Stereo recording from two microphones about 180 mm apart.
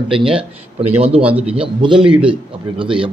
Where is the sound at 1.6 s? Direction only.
25° right (ahead or behind).